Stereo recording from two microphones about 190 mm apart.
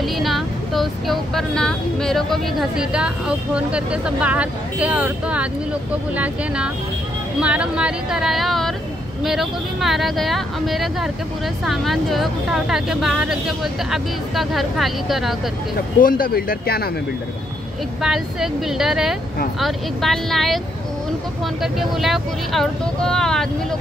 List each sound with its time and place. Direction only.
0.0 s speech: centre (ahead or behind)
16.0 s speech: 50° left (ahead or behind)
18.0 s speech: centre (ahead or behind)
21.7 s speech: centre (ahead or behind)